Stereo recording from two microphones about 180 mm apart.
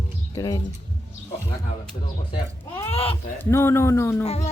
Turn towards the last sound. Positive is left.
turn(degrees=35)  # may be behind; listen again after turning